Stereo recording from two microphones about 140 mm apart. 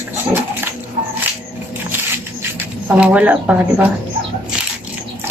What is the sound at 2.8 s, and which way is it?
A woman's voice, 10° right (ahead or behind).